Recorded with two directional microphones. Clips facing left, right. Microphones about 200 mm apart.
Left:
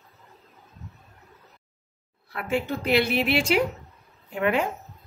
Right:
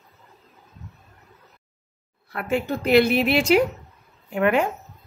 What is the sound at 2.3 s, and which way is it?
A woman's voice, 45° right (ahead or behind).